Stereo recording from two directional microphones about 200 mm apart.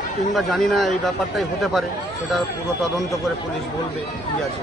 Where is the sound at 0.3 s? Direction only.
Centre (ahead or behind).